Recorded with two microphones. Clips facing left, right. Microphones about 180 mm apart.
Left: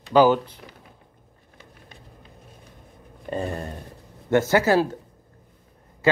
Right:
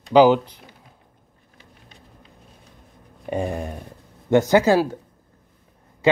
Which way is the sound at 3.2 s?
15° right (ahead or behind).